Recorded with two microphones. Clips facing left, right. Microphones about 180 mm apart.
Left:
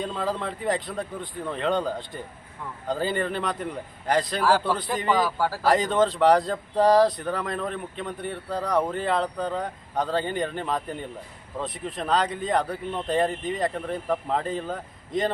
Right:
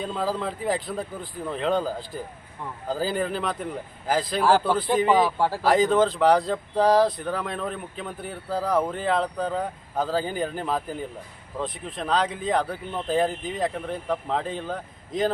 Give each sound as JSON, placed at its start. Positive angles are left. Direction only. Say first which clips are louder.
{"t": 0.0, "sound": "speech", "louder": "right 1 dB", "side_deg": -5}
{"t": 5.1, "sound": "a man's voice", "louder": "right 3 dB", "side_deg": -25}
{"t": 5.6, "sound": "speech", "louder": "right 2 dB", "side_deg": 0}